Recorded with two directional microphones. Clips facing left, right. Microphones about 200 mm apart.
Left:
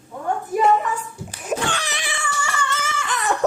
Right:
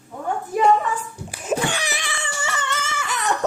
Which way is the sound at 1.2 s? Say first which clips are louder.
Right 2 dB; 10° right (ahead or behind).